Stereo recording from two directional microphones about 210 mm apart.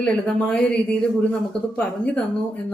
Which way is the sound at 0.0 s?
5° left (ahead or behind).